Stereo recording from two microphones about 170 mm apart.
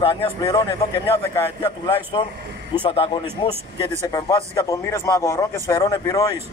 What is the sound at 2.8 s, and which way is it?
Speech, 35° left (ahead or behind).